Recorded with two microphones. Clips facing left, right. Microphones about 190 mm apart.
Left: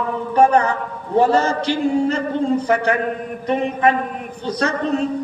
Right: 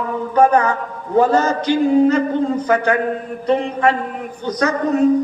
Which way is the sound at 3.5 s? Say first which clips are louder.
Right 1 dB; 20° left (ahead or behind).